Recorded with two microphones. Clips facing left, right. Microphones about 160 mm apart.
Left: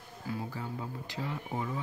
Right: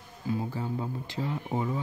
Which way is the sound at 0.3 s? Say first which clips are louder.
Right 6 dB; 25° right (ahead or behind).